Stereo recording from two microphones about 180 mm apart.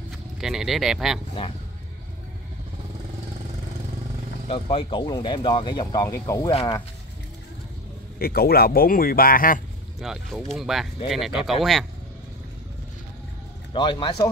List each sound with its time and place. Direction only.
0.4 s speech: centre (ahead or behind)
4.5 s speech: 30° left (ahead or behind)
8.2 s speech: 55° left (ahead or behind)
9.9 s speech: centre (ahead or behind)
13.7 s speech: 25° left (ahead or behind)